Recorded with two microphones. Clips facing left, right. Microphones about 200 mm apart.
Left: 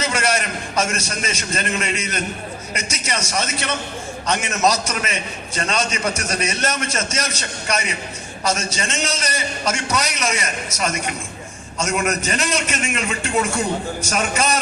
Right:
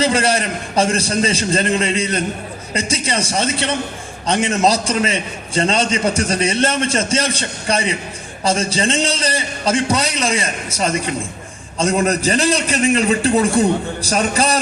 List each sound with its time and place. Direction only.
0.0 s a man's voice: 30° right (ahead or behind)